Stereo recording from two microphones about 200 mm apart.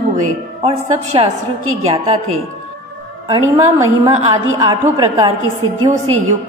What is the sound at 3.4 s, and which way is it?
Speech, 15° right (ahead or behind).